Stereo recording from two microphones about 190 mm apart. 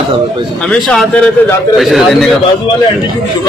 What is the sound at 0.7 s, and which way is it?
A man's voice, 5° left (ahead or behind).